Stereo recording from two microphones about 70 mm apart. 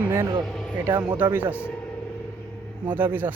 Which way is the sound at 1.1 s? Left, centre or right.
Right.